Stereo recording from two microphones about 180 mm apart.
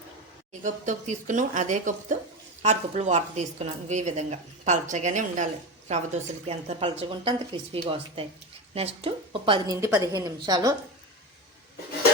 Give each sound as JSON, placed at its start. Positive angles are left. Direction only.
{"t": 0.6, "sound": "a woman's voice", "side_deg": -45}
{"t": 9.8, "sound": "a woman's voice", "side_deg": -15}